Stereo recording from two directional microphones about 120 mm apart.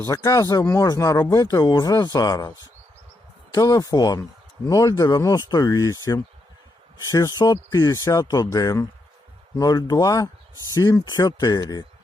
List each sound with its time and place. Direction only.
0.0 s speech: 25° left (ahead or behind)